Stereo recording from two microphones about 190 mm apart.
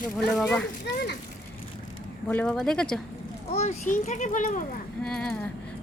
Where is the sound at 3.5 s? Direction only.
35° left (ahead or behind).